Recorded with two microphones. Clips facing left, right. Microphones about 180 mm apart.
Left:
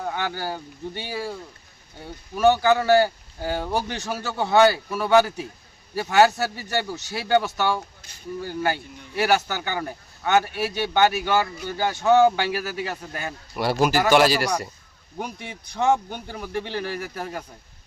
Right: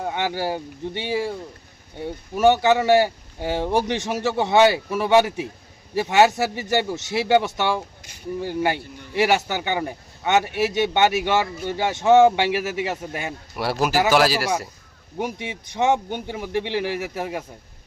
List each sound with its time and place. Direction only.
0.0 s speech: 15° right (ahead or behind)
2.3 s speech: 25° right (ahead or behind)
13.6 s speech: centre (ahead or behind)
15.2 s a man's voice: 20° right (ahead or behind)